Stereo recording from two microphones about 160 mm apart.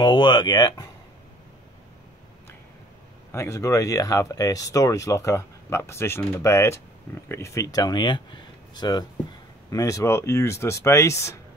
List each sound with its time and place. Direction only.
0.0 s speech: 30° left (ahead or behind)
3.3 s speech: 15° left (ahead or behind)